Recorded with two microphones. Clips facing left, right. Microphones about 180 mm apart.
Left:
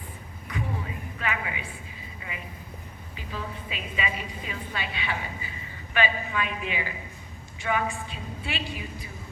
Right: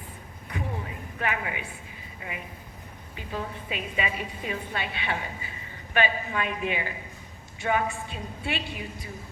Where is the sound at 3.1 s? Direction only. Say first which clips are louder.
Right 2 dB; 55° right (ahead or behind).